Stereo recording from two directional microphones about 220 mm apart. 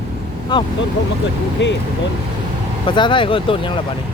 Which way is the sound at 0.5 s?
20° left (ahead or behind).